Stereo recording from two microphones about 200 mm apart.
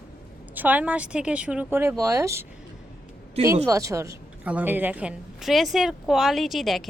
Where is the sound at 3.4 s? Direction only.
15° right (ahead or behind).